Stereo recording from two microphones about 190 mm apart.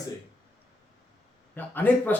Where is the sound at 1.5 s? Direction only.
10° left (ahead or behind).